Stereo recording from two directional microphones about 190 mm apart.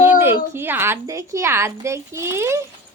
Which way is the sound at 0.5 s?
10° right (ahead or behind).